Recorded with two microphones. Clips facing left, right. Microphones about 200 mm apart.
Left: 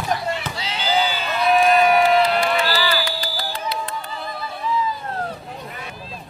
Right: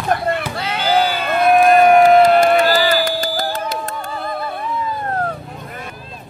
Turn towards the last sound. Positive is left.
turn(degrees=-50)  # may be behind; listen again after turning